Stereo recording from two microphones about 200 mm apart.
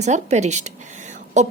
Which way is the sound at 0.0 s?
35° right (ahead or behind).